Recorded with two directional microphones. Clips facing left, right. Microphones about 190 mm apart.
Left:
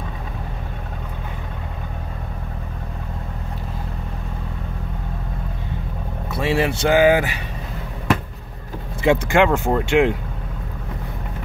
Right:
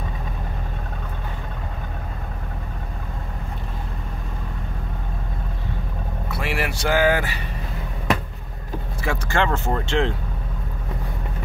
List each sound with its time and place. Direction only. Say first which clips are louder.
6.3 s speech: left 7 dB; 25° left (ahead or behind)
9.0 s speech: left 8 dB; 20° left (ahead or behind)